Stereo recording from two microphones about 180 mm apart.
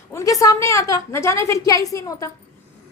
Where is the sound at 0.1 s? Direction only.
15° left (ahead or behind).